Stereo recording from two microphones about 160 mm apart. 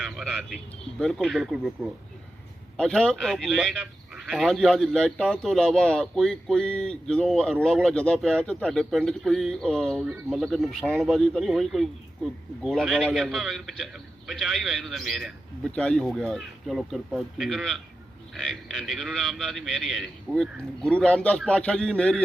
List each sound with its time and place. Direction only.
0.0 s vehicle: centre (ahead or behind)
0.9 s a man's voice: centre (ahead or behind)